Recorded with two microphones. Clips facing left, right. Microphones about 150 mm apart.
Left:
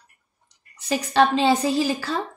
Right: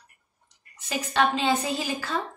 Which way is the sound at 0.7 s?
35° left (ahead or behind).